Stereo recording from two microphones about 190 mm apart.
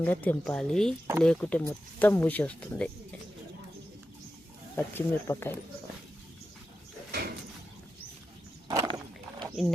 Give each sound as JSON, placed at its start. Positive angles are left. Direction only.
{"t": 0.0, "sound": "speech", "side_deg": 10}
{"t": 4.8, "sound": "speech", "side_deg": 10}
{"t": 7.1, "sound": "sliding door", "side_deg": -55}
{"t": 8.6, "sound": "a sound", "side_deg": -20}
{"t": 9.6, "sound": "speech", "side_deg": 0}